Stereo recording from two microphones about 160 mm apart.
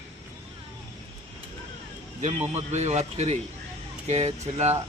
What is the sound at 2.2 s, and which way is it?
A man's voice, 45° right (ahead or behind).